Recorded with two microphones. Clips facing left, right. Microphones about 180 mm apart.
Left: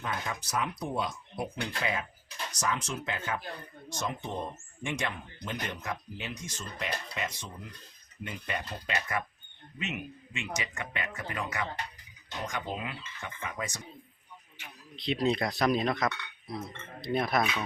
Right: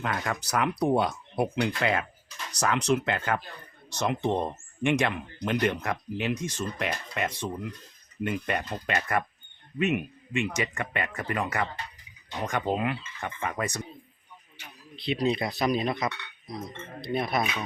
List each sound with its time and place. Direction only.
0.0 s speech: 75° right (ahead or behind)
14.9 s speech: centre (ahead or behind)